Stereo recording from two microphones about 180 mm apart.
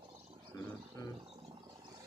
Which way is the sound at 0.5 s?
20° left (ahead or behind).